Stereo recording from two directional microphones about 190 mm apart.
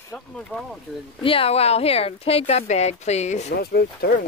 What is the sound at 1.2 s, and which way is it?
Speech, 30° left (ahead or behind).